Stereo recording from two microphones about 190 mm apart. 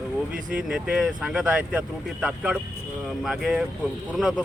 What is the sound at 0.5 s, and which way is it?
Speech, 5° right (ahead or behind).